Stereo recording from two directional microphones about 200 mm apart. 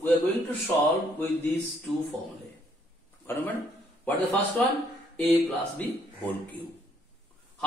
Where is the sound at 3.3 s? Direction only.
10° left (ahead or behind).